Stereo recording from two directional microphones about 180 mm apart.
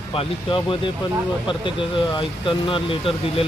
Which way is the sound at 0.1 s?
30° left (ahead or behind).